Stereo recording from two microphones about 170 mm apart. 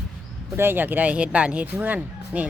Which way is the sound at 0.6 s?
10° right (ahead or behind).